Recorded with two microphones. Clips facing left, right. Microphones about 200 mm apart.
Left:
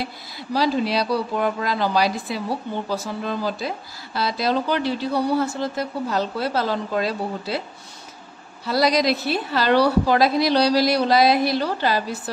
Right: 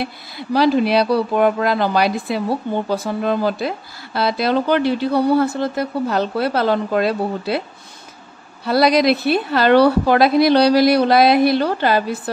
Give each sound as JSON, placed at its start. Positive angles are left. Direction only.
{"t": 0.0, "sound": "speech", "side_deg": -60}
{"t": 8.6, "sound": "speech", "side_deg": -60}